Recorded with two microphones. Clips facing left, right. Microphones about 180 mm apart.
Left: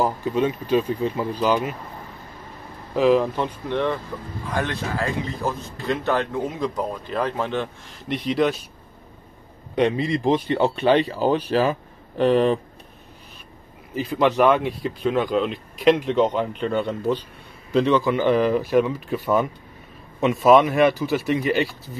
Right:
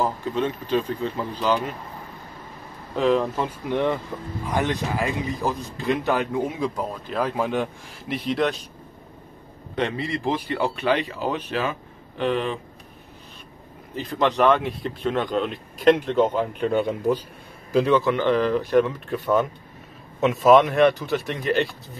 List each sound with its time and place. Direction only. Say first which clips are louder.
0.0 s speech: left 3 dB; 10° left (ahead or behind)
3.0 s speech: left 3 dB; 5° left (ahead or behind)
3.7 s speech: right 1 dB; 15° right (ahead or behind); by 8.5 s centre (ahead or behind)
9.8 s speech: left 5 dB; 15° left (ahead or behind); by 12.5 s 40° left (ahead or behind)
13.9 s speech: left 3 dB; 5° left (ahead or behind)
18.1 s speech: left 2 dB; 10° left (ahead or behind)